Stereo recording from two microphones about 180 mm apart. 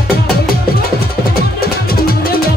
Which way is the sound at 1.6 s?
55° left (ahead or behind).